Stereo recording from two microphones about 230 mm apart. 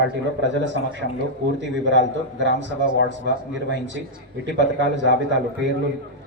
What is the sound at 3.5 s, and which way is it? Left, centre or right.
Speech, right.